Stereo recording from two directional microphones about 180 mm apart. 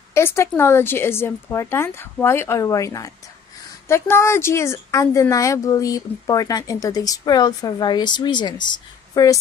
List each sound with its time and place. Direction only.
0.1 s speech: 15° left (ahead or behind)